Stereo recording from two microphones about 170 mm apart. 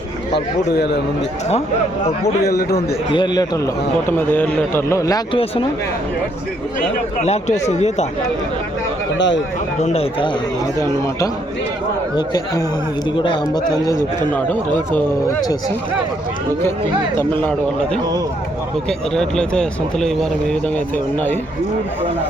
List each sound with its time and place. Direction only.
0.3 s speech: 75° left (ahead or behind)
2.5 s a man's voice: 65° left (ahead or behind)
2.7 s a man's voice: 30° left (ahead or behind)
4.3 s a man's voice: 10° left (ahead or behind)
6.7 s speech: 45° left (ahead or behind)
9.1 s speech: 90° left
9.8 s speech: 35° left (ahead or behind)
10.8 s a man's voice: 20° left (ahead or behind)
14.3 s a man's voice: 10° left (ahead or behind)
17.4 s a man's voice: 5° left (ahead or behind)